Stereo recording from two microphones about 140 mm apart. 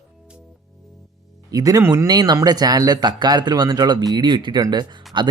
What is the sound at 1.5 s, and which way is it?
Speech, 25° right (ahead or behind).